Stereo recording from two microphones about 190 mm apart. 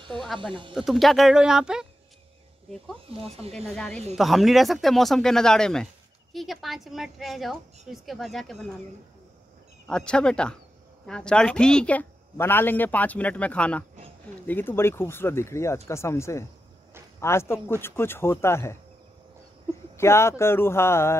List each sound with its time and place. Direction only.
0.4 s speech: 25° right (ahead or behind)
0.7 s speech: centre (ahead or behind)
3.2 s speech: 30° right (ahead or behind)
3.5 s speech: centre (ahead or behind)
9.8 s a woman's voice: 5° left (ahead or behind)
20.0 s a woman's voice: 15° left (ahead or behind)